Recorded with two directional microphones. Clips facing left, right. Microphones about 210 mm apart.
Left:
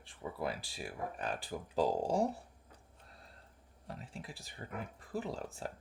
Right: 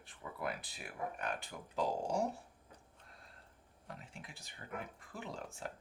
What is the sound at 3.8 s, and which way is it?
Speech, 35° left (ahead or behind).